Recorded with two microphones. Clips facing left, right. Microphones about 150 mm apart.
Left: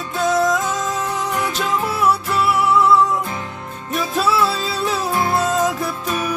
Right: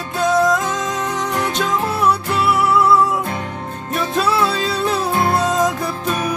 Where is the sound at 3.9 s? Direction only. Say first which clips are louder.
Right 1 dB; 5° left (ahead or behind).